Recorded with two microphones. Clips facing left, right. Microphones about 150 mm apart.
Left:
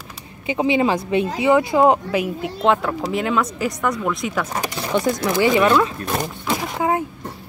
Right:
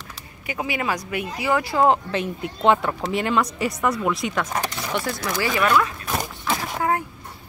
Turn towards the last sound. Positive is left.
turn(degrees=15)  # may be behind; listen again after turning